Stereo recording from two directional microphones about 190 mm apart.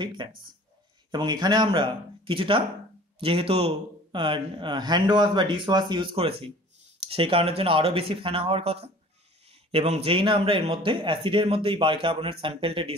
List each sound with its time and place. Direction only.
0.0 s speech: 25° right (ahead or behind)